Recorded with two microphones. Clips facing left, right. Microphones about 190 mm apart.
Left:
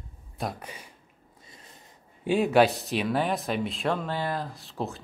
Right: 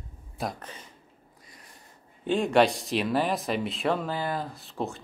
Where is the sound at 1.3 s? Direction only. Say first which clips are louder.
Left 3 dB; 25° left (ahead or behind).